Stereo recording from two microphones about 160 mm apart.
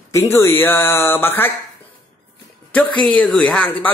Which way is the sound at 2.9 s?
10° left (ahead or behind).